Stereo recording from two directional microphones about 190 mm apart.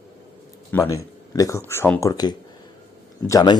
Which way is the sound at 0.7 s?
15° left (ahead or behind).